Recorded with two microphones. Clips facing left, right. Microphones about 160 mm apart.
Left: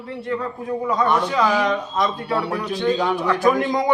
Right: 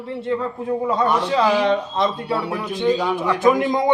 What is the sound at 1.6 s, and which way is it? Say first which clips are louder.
A man's voice: right 2 dB; 30° right (ahead or behind).